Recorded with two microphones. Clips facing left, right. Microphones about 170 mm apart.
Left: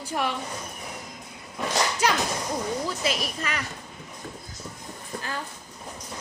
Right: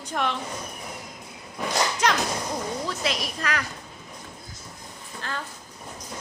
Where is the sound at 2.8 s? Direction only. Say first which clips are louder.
Left 1 dB; centre (ahead or behind).